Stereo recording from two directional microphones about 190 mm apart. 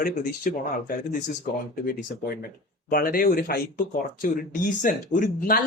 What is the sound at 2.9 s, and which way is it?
Speech, 50° left (ahead or behind).